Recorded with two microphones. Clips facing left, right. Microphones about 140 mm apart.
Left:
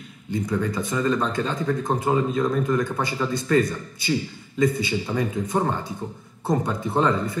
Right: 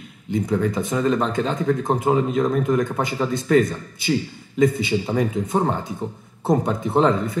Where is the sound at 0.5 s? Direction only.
25° right (ahead or behind).